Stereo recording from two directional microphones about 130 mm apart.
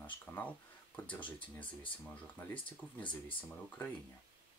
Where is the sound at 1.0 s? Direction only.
10° left (ahead or behind).